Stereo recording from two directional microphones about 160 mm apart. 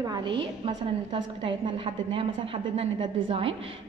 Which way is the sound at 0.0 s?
30° right (ahead or behind).